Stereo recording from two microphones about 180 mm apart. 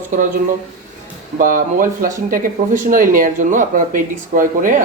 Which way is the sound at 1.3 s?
50° right (ahead or behind).